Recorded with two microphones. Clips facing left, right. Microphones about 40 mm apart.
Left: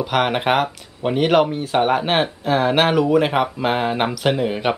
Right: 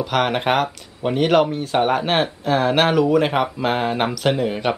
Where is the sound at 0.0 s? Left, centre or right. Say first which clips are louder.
Left 1 dB; centre.